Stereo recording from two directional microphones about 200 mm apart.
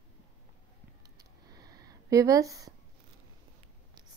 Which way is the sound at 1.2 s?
20° right (ahead or behind).